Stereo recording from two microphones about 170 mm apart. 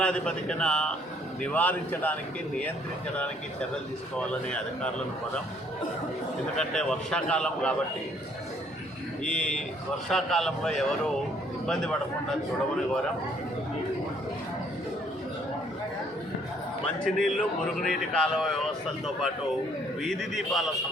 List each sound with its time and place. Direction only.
0.0 s a man's voice: 5° left (ahead or behind)
4.2 s a man's voice: 5° left (ahead or behind)
6.6 s a man's voice: 5° left (ahead or behind)
9.2 s a man's voice: 5° left (ahead or behind)
16.8 s a man's voice: 5° left (ahead or behind)
20.0 s a man's voice: centre (ahead or behind)